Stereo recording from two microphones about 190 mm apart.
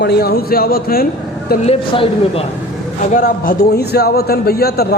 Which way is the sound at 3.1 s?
45° left (ahead or behind).